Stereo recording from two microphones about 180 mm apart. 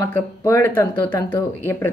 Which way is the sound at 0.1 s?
15° left (ahead or behind).